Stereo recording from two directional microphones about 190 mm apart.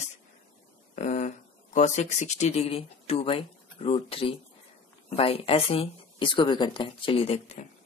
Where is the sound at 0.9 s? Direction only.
40° left (ahead or behind).